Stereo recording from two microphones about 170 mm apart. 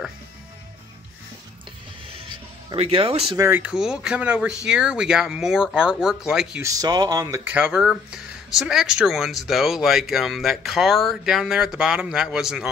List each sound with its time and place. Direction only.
2.7 s speech: 30° right (ahead or behind)
3.3 s speech: 15° right (ahead or behind)
6.6 s speech: 20° right (ahead or behind)
7.5 s speech: 5° right (ahead or behind)